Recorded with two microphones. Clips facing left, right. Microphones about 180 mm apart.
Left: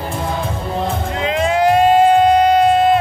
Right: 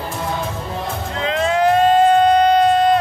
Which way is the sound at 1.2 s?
10° left (ahead or behind).